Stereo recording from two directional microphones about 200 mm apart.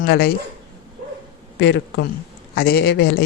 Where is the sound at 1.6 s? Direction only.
60° left (ahead or behind).